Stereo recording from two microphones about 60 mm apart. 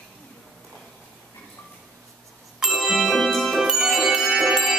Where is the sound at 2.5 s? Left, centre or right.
Centre.